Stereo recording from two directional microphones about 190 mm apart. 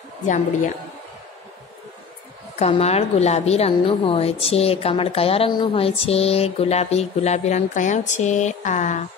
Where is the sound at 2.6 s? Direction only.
35° left (ahead or behind).